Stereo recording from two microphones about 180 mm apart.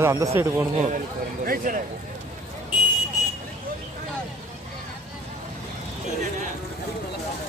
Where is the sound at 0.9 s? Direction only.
50° right (ahead or behind).